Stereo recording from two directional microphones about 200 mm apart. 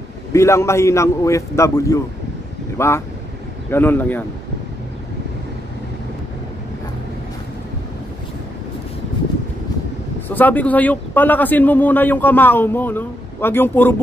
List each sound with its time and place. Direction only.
0.3 s a man's voice: 15° left (ahead or behind)
10.2 s a man's voice: 10° left (ahead or behind)